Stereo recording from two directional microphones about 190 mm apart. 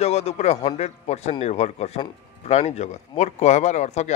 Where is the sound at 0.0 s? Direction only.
35° left (ahead or behind).